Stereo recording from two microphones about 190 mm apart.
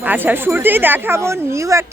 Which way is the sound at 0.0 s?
10° right (ahead or behind).